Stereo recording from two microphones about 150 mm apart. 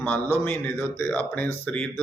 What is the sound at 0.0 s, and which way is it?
A man's voice, 10° left (ahead or behind).